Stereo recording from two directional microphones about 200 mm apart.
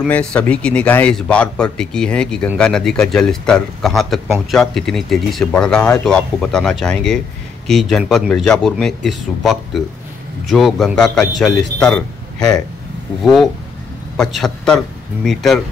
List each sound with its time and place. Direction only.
0.0 s a man's voice: 5° left (ahead or behind)